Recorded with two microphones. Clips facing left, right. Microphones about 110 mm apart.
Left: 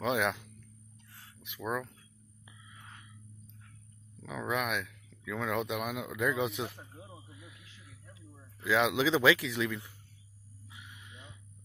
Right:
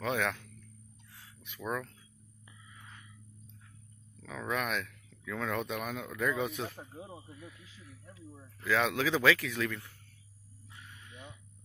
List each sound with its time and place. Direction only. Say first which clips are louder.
0.0 s speech: left 2 dB; 15° left (ahead or behind)
1.4 s speech: left 1 dB; 5° left (ahead or behind)
4.2 s speech: left 1 dB; 15° left (ahead or behind)
8.6 s speech: left 2 dB; 15° left (ahead or behind)
9.5 s speech: left 1 dB; 5° left (ahead or behind)
10.7 s a sound: even; 10° left (ahead or behind)